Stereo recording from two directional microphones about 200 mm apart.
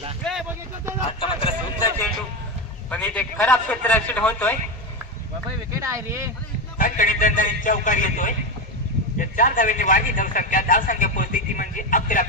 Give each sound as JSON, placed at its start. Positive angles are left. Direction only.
{"t": 0.2, "sound": "vehicle", "side_deg": 0}
{"t": 1.2, "sound": "a sound", "side_deg": 25}
{"t": 2.9, "sound": "a man's voice", "side_deg": 5}
{"t": 5.8, "sound": "speech", "side_deg": -15}
{"t": 6.8, "sound": "a man's voice", "side_deg": 40}